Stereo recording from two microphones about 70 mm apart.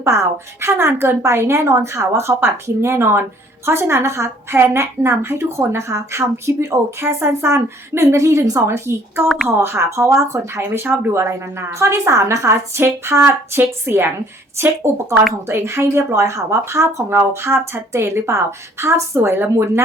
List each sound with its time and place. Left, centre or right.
0.0 s speech: right